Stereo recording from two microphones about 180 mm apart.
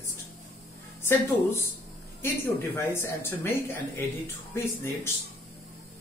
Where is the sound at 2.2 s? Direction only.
15° left (ahead or behind).